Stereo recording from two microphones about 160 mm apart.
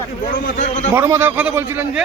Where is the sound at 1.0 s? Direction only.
15° right (ahead or behind).